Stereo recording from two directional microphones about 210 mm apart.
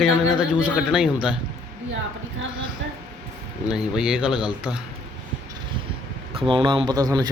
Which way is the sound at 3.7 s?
5° right (ahead or behind).